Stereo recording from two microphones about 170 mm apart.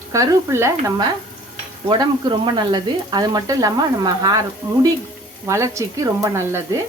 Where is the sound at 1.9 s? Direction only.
30° right (ahead or behind).